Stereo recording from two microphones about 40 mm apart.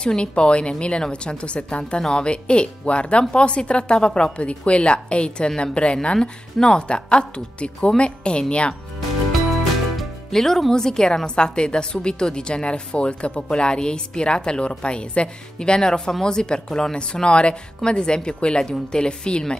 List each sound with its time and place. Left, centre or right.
0.0 s a woman's voice: left
9.3 s music: centre
10.3 s a woman's voice: centre